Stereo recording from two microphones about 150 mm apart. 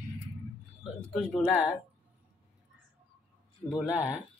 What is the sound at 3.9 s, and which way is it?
Speech, 10° right (ahead or behind).